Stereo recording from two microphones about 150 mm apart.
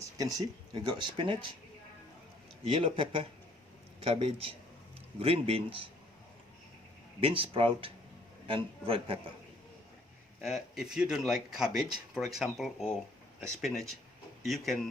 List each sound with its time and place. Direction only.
0.0 s speech: 25° right (ahead or behind)
2.6 s speech: 35° right (ahead or behind)
7.2 s speech: 35° right (ahead or behind)
10.4 s speech: centre (ahead or behind)